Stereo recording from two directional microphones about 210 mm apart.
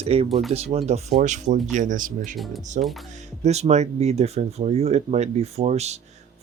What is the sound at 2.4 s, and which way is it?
Speech, centre (ahead or behind).